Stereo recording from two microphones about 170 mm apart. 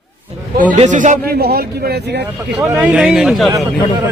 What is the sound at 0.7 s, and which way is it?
Speech, 50° right (ahead or behind).